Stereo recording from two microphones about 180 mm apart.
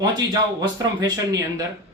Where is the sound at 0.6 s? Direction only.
20° right (ahead or behind).